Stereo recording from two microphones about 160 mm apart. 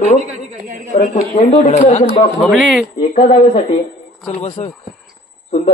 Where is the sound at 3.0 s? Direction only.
55° left (ahead or behind).